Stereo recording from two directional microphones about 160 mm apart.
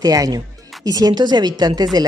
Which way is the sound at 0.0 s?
20° right (ahead or behind).